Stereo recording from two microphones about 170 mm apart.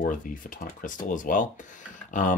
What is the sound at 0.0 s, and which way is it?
Speech, 50° left (ahead or behind).